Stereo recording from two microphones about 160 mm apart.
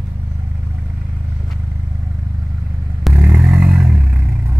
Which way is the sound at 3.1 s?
20° right (ahead or behind).